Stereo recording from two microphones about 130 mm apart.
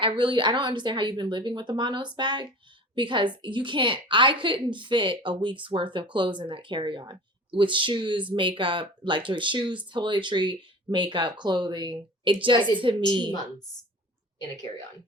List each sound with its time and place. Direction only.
0.0 s a woman's voice: 40° right (ahead or behind)